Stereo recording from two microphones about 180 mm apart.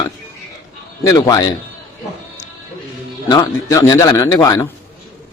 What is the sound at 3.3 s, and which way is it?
A man's voice, 20° left (ahead or behind).